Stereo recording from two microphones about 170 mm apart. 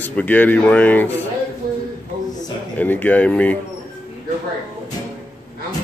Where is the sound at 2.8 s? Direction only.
10° left (ahead or behind).